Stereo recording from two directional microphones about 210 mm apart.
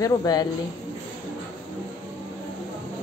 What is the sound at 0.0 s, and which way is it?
Speech, 15° left (ahead or behind).